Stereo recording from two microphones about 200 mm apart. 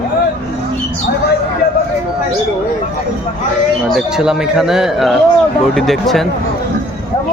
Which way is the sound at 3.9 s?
Centre (ahead or behind).